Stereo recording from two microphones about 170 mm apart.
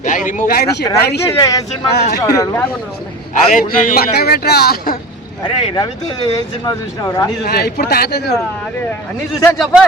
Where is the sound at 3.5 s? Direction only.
55° left (ahead or behind).